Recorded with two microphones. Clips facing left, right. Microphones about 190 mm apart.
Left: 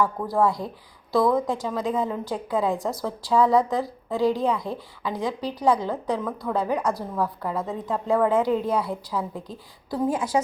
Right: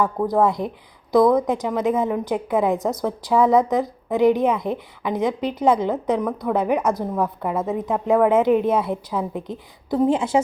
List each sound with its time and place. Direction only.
0.0 s a woman's voice: 20° right (ahead or behind)